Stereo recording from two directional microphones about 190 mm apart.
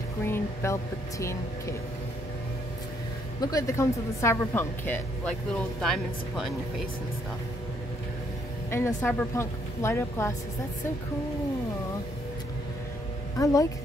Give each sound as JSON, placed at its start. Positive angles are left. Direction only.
{"t": 0.2, "sound": "a woman's voice", "side_deg": 15}
{"t": 3.3, "sound": "a woman's voice", "side_deg": 20}
{"t": 8.6, "sound": "a woman's voice", "side_deg": 15}
{"t": 13.4, "sound": "a woman's voice", "side_deg": 15}